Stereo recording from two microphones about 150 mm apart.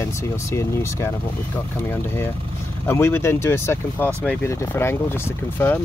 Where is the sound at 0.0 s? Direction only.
20° left (ahead or behind).